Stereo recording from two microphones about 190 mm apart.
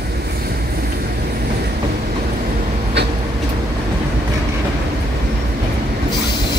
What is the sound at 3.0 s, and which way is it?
Vehicle, 65° right (ahead or behind).